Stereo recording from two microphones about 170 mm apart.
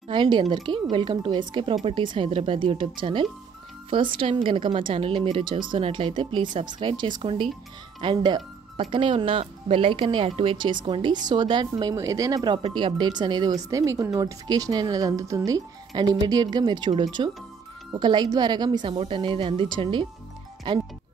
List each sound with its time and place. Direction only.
0.1 s speech: 30° right (ahead or behind)